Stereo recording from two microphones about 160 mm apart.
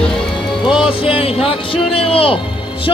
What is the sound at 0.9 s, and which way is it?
A man's voice, 35° left (ahead or behind).